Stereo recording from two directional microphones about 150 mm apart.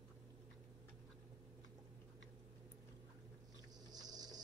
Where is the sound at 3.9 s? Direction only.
25° right (ahead or behind).